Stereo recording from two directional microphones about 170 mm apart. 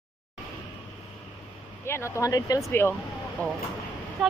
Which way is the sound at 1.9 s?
15° left (ahead or behind).